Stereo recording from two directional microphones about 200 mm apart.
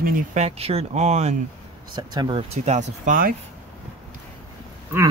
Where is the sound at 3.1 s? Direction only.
45° right (ahead or behind).